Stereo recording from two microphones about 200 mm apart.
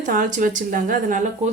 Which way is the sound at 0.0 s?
40° right (ahead or behind).